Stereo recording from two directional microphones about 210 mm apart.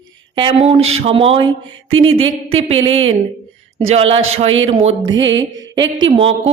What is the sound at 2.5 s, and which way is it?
Speech, 30° right (ahead or behind).